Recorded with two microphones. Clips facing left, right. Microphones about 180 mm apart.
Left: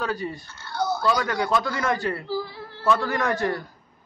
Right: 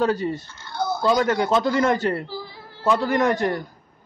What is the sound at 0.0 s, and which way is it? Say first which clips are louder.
A man's voice: right 7 dB; 25° right (ahead or behind).